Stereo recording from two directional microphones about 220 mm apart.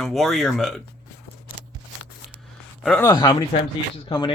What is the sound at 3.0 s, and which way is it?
Speech, 20° left (ahead or behind).